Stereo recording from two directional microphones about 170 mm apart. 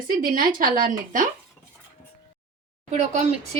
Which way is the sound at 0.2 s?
55° right (ahead or behind).